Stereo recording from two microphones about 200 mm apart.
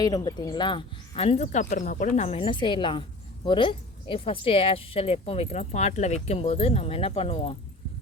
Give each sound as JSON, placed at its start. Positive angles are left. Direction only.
{"t": 0.0, "sound": "speech", "side_deg": 20}